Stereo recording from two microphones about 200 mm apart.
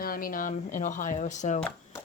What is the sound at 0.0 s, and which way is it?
A woman's voice, 45° left (ahead or behind).